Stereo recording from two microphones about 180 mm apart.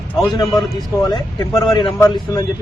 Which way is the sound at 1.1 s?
25° left (ahead or behind).